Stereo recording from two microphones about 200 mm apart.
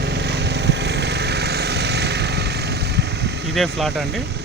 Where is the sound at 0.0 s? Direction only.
55° right (ahead or behind).